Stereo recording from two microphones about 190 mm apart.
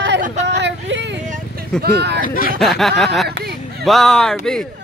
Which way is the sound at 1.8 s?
60° right (ahead or behind).